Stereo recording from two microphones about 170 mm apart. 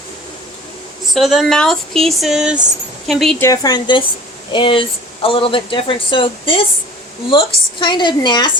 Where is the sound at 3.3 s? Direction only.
15° left (ahead or behind).